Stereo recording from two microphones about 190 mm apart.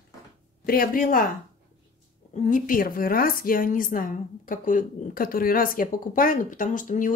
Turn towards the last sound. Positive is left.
turn(degrees=45)  # may be behind; listen again after turning